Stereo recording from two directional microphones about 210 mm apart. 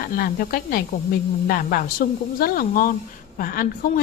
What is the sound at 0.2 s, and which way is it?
A woman's voice, 45° left (ahead or behind).